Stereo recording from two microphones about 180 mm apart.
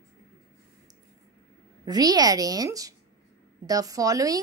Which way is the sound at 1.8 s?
20° right (ahead or behind).